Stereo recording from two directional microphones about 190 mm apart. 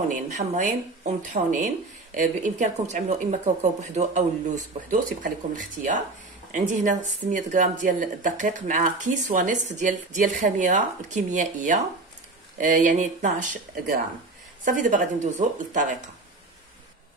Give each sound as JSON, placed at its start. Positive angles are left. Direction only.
{"t": 0.3, "sound": "speech", "side_deg": -40}